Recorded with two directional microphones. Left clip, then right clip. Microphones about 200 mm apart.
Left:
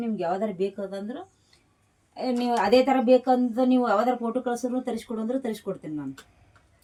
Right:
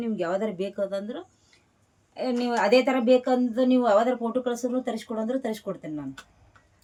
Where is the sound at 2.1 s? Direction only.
10° right (ahead or behind).